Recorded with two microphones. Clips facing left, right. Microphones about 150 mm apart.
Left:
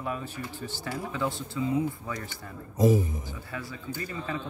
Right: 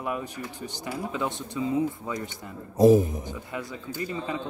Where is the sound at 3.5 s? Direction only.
15° right (ahead or behind).